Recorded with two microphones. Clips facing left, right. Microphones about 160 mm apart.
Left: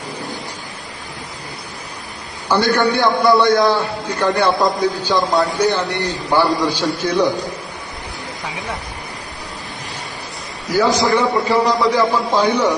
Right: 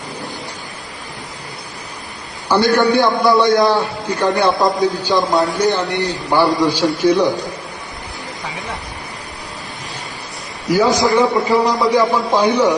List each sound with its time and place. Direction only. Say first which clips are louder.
2.5 s a man's voice: right 2 dB; 15° right (ahead or behind)
10.9 s a man's voice: right 2 dB; 15° right (ahead or behind)